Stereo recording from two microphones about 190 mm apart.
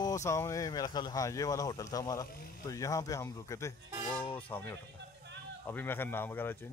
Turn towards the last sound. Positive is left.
turn(degrees=10)  # may be behind; listen again after turning